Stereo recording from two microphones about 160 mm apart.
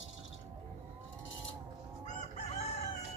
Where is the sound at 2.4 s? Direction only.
45° left (ahead or behind).